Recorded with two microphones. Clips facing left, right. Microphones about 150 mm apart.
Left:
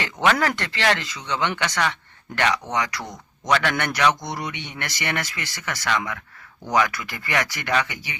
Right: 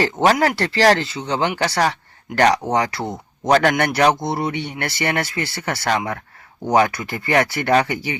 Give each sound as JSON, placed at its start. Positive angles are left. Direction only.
{"t": 0.0, "sound": "speech", "side_deg": -35}